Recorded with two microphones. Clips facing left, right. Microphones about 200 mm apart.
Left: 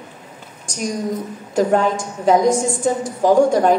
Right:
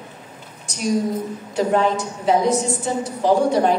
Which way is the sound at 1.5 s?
45° left (ahead or behind).